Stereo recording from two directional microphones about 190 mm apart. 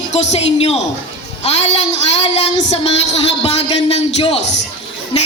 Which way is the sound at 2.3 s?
35° left (ahead or behind).